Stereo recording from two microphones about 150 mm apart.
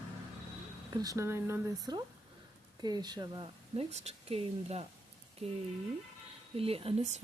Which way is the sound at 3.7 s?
45° right (ahead or behind).